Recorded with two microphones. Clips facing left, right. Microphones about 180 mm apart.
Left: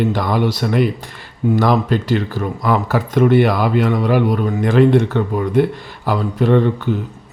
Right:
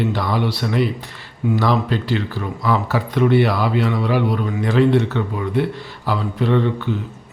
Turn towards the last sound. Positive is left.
turn(degrees=45)  # may be behind; listen again after turning